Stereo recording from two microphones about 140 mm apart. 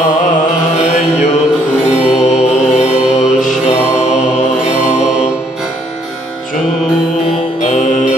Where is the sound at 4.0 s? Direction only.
55° left (ahead or behind).